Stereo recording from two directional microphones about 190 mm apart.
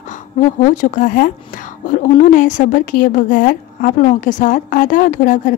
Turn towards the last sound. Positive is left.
turn(degrees=45)  # may be behind; listen again after turning